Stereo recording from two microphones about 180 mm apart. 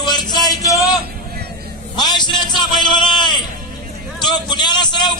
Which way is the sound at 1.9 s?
25° left (ahead or behind).